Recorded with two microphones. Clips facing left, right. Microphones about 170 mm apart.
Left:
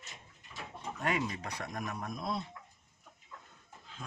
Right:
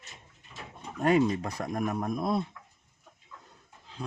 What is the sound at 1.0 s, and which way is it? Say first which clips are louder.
Speech: right 11 dB; 35° right (ahead or behind).